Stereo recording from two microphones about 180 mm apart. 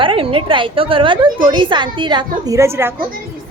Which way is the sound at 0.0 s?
30° right (ahead or behind).